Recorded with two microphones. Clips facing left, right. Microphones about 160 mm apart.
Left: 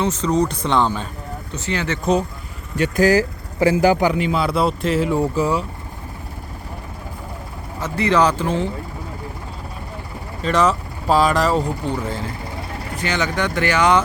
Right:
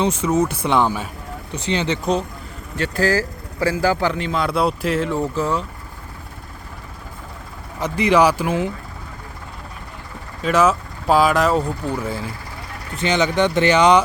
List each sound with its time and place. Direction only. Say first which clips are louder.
0.0 s speech: even; 10° right (ahead or behind)
2.7 s speech: left 4 dB; 15° left (ahead or behind)
7.8 s speech: right 2 dB; 15° right (ahead or behind)
10.4 s speech: right 1 dB; 5° right (ahead or behind); by 14.0 s 20° right (ahead or behind)